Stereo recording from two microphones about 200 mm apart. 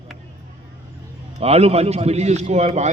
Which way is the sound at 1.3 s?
30° right (ahead or behind).